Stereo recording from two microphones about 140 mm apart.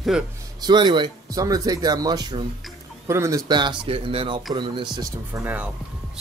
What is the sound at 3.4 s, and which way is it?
Speech, 30° right (ahead or behind).